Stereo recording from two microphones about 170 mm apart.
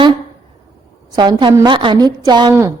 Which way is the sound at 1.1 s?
25° right (ahead or behind).